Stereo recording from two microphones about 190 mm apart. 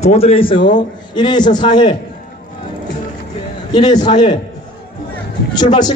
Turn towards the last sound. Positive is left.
turn(degrees=20)  # may be behind; listen again after turning